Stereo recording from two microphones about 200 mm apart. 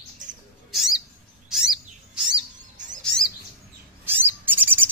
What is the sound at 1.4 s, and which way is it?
Bird vocalization, centre (ahead or behind).